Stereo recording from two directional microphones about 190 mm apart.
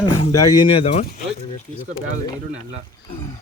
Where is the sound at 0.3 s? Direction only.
20° left (ahead or behind).